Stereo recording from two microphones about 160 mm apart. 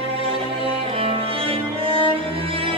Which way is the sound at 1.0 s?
35° right (ahead or behind).